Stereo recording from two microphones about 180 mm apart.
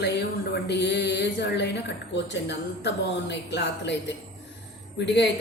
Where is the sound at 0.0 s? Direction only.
65° left (ahead or behind).